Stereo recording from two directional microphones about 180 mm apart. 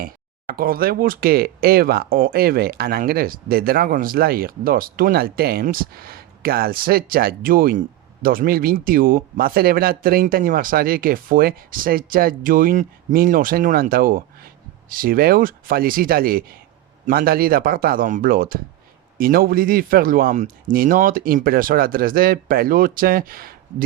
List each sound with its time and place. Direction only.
0.5 s speech: 55° right (ahead or behind)